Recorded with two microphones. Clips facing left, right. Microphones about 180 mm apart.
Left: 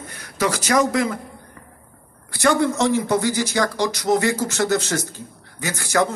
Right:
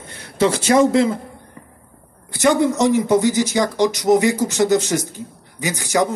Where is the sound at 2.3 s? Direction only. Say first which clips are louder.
Right 3 dB; 20° right (ahead or behind).